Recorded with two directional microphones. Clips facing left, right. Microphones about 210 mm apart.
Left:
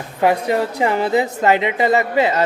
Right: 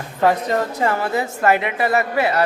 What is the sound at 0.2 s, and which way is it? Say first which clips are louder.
A woman's voice: left 1 dB; 10° left (ahead or behind).